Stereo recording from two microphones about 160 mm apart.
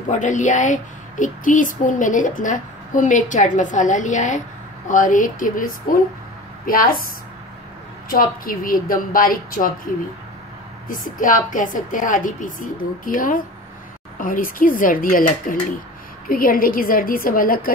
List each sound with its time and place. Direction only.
0.1 s a woman's voice: 50° left (ahead or behind)
8.1 s a woman's voice: 60° left (ahead or behind)